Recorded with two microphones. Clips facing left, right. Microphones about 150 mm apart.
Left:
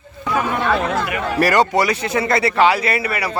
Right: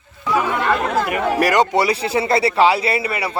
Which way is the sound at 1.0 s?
45° right (ahead or behind).